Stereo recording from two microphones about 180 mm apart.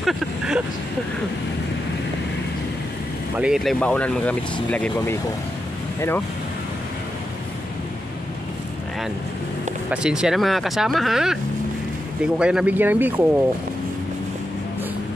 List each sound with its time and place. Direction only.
0.0 s vehicle: 5° right (ahead or behind)
3.3 s speech: 5° right (ahead or behind); by 6.2 s 15° left (ahead or behind)
9.8 s speech: 5° right (ahead or behind)
12.4 s speech: 5° right (ahead or behind)